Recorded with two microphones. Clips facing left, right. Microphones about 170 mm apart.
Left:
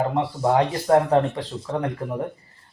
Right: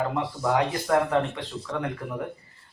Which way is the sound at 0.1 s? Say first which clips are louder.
Left 4 dB; 30° left (ahead or behind).